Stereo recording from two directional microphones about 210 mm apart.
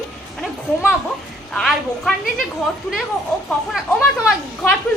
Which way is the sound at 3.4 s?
Centre (ahead or behind).